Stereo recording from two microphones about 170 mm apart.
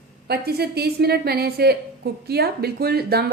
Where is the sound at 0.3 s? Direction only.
70° right (ahead or behind).